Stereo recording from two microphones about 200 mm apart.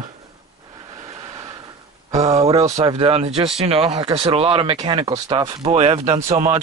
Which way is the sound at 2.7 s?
30° right (ahead or behind).